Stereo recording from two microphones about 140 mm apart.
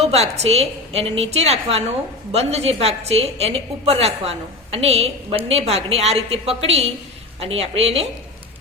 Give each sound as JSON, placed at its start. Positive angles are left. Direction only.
{"t": 0.0, "sound": "a woman's voice", "side_deg": -50}